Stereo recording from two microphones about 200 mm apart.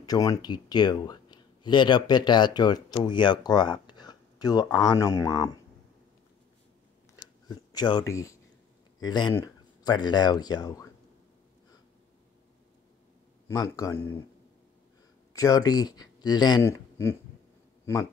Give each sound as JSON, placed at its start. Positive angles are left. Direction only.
{"t": 0.0, "sound": "speech", "side_deg": 15}
{"t": 7.2, "sound": "a sound", "side_deg": 20}
{"t": 9.0, "sound": "speech", "side_deg": 20}
{"t": 13.5, "sound": "speech", "side_deg": 15}
{"t": 15.3, "sound": "speech", "side_deg": 20}